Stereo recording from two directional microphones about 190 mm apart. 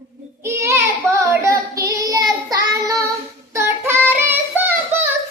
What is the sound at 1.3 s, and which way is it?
Child singing, 15° right (ahead or behind).